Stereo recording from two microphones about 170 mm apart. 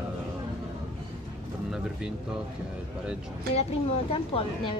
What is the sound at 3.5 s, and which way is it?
A woman's voice, 35° left (ahead or behind).